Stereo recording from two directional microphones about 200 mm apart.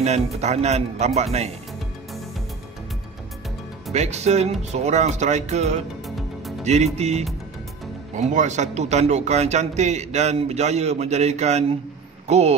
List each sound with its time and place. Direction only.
0.0 s speech: 35° right (ahead or behind)
3.9 s speech: 35° right (ahead or behind)
6.0 s music: centre (ahead or behind)
6.6 s speech: 35° right (ahead or behind)